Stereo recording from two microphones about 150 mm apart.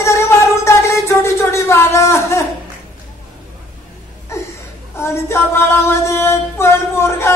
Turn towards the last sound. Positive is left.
turn(degrees=20)  # may be behind; listen again after turning